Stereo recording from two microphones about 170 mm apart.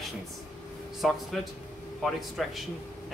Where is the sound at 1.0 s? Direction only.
Centre (ahead or behind).